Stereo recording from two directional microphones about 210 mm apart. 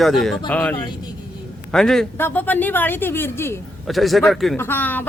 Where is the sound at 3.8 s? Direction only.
Centre (ahead or behind).